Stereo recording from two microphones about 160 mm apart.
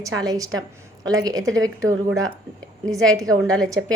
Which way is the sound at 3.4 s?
5° left (ahead or behind).